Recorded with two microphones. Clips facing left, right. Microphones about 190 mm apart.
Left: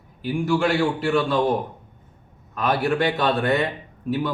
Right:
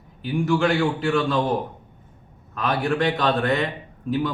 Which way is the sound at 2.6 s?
Centre (ahead or behind).